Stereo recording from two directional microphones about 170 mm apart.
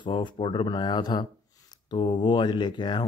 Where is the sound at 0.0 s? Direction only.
25° left (ahead or behind).